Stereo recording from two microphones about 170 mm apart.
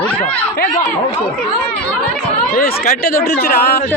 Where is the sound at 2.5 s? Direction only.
55° left (ahead or behind).